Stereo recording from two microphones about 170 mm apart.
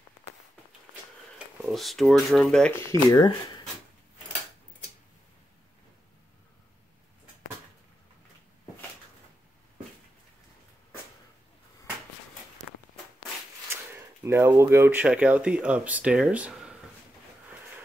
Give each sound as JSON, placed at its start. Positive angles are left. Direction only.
{"t": 1.6, "sound": "speech", "side_deg": 0}
{"t": 2.9, "sound": "speech", "side_deg": 20}
{"t": 13.7, "sound": "speech", "side_deg": -15}